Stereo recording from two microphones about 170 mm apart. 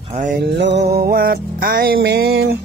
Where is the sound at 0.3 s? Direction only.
90° right; by 2.6 s 65° right (ahead or behind).